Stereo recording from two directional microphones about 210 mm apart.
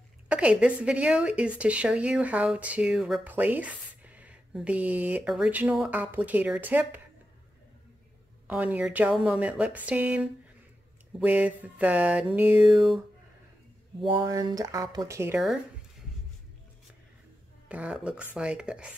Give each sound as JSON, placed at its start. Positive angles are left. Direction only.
{"t": 0.3, "sound": "a woman's voice", "side_deg": -5}
{"t": 8.5, "sound": "a woman's voice", "side_deg": -5}
{"t": 14.0, "sound": "a woman's voice", "side_deg": -20}
{"t": 17.6, "sound": "speech", "side_deg": -5}